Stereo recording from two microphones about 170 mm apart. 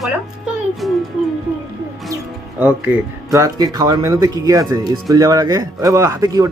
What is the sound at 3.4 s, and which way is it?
A woman's voice, 25° right (ahead or behind).